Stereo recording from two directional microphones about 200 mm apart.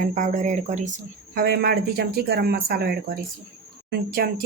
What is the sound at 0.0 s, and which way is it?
Speech, 40° right (ahead or behind).